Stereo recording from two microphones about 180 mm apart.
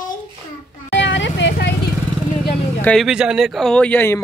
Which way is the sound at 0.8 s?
85° left.